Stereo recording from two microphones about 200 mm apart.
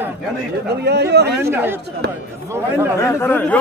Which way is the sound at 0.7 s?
55° right (ahead or behind).